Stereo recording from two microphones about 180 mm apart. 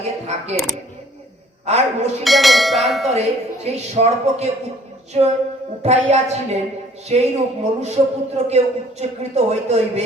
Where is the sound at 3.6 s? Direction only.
35° right (ahead or behind).